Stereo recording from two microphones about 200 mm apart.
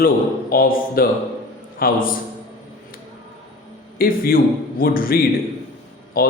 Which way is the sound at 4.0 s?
45° left (ahead or behind).